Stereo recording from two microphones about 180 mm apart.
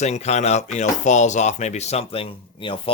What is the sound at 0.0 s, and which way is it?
Speech, 40° left (ahead or behind).